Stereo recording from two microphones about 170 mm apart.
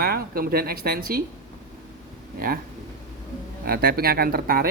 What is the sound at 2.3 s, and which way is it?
Speech, 60° right (ahead or behind).